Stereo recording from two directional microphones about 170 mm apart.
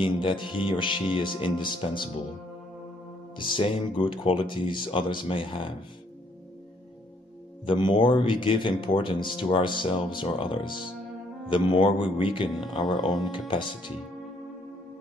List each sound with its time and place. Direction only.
0.0 s speech: 30° left (ahead or behind)
3.3 s speech: 30° left (ahead or behind)
7.6 s speech: 30° left (ahead or behind)